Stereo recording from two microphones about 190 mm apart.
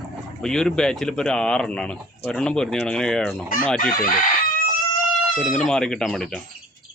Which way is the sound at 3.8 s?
45° left (ahead or behind).